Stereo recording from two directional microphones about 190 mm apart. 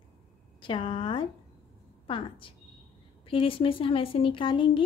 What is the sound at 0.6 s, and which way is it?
Speech, 25° left (ahead or behind).